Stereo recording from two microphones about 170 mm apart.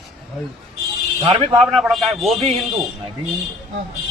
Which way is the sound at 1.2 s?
30° right (ahead or behind).